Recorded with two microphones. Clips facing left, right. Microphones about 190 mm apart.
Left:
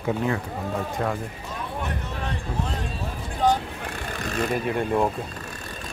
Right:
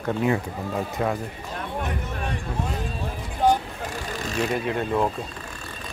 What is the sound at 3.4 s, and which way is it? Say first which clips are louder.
Vehicle: right 1 dB; 10° right (ahead or behind).